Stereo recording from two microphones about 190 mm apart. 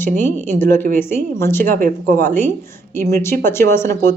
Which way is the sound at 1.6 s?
50° right (ahead or behind).